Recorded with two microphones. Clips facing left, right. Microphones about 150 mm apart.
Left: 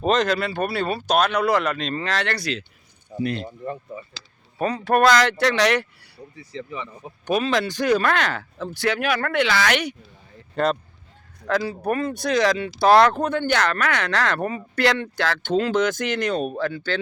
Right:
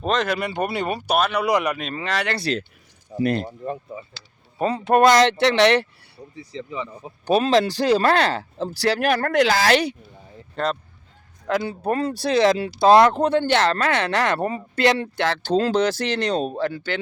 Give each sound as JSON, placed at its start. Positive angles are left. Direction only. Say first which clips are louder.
{"t": 0.0, "sound": "speech", "louder": "left 2 dB", "side_deg": 0}
{"t": 0.3, "sound": "speech", "louder": "left 1 dB", "side_deg": -15}
{"t": 3.2, "sound": "speech", "louder": "right 5 dB", "side_deg": -50}
{"t": 3.9, "sound": "speech", "louder": "even", "side_deg": -25}
{"t": 10.5, "sound": "speech", "louder": "left 3 dB", "side_deg": 5}
{"t": 11.4, "sound": "speech", "louder": "even", "side_deg": -20}
{"t": 11.8, "sound": "speech", "louder": "right 1 dB", "side_deg": -30}